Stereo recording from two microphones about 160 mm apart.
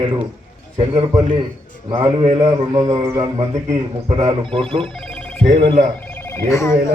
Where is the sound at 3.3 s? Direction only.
40° right (ahead or behind).